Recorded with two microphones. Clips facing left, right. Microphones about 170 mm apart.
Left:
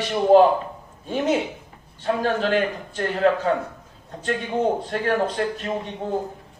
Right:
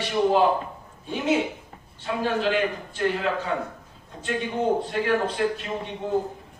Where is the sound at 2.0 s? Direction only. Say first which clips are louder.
Left 3 dB; 45° left (ahead or behind).